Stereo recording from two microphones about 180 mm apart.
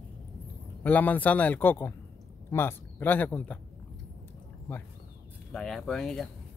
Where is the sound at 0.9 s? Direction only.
10° left (ahead or behind).